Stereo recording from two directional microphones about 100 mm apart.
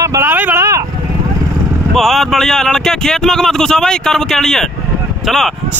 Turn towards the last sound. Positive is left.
turn(degrees=5)  # may be behind; listen again after turning